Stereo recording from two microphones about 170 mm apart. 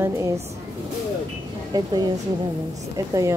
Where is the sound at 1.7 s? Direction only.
20° right (ahead or behind).